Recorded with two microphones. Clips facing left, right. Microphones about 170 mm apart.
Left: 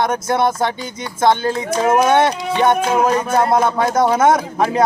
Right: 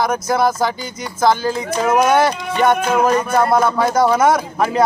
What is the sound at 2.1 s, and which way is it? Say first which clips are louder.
Speech: left 1 dB; 25° left (ahead or behind).